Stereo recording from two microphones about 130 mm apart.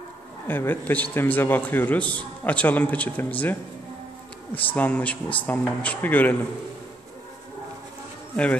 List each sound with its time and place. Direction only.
0.5 s a man's voice: 15° left (ahead or behind)
4.6 s a man's voice: 10° left (ahead or behind)